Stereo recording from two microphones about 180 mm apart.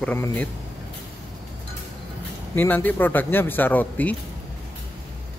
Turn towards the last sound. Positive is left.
turn(degrees=10)  # may be behind; listen again after turning